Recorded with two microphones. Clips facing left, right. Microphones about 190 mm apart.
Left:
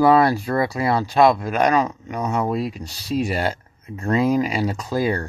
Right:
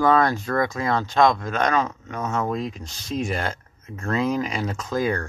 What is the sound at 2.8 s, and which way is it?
Speech, 35° left (ahead or behind).